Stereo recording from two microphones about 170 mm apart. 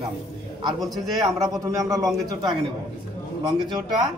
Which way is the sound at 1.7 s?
20° right (ahead or behind).